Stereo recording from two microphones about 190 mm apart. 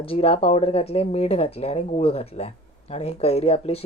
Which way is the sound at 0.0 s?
30° left (ahead or behind).